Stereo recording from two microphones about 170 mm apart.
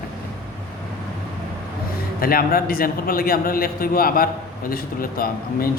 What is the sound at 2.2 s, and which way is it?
A man's voice, 60° left (ahead or behind).